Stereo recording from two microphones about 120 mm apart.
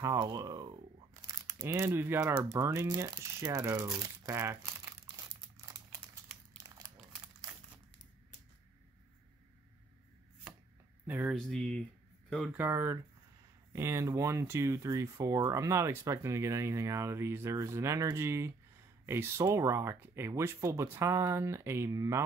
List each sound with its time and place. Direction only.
0.0 s speech: 35° right (ahead or behind)
1.2 s speech: 25° right (ahead or behind)
6.6 s crumpling: 30° right (ahead or behind)
11.1 s speech: 10° right (ahead or behind)
11.3 s speech: 5° left (ahead or behind)
12.5 s speech: 20° right (ahead or behind)